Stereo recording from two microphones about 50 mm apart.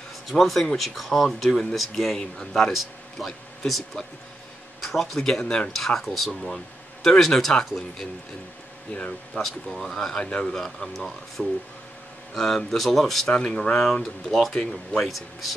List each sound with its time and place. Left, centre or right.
0.3 s speech: centre
5.4 s speech: centre
5.7 s speech: centre
8.9 s speech: left
9.4 s speech: centre
13.3 s speech: centre
15.0 s speech: centre